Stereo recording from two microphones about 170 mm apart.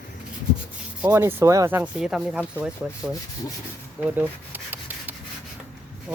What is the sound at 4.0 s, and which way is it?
Rub, 10° right (ahead or behind).